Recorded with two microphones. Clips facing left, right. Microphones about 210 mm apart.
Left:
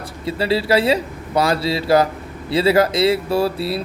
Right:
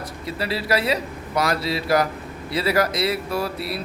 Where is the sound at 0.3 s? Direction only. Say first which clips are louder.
Left 6 dB; 30° left (ahead or behind).